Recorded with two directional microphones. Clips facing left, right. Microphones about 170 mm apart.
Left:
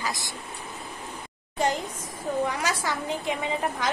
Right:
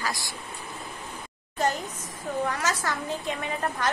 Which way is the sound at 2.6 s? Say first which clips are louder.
Even; 10° left (ahead or behind).